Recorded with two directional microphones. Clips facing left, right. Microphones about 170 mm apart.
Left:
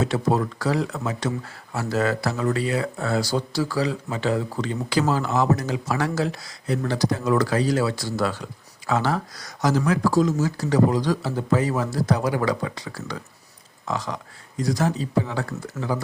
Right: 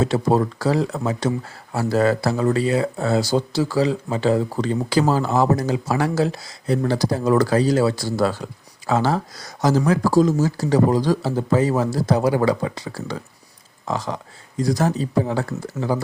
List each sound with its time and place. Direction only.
0.0 s speech: 30° right (ahead or behind)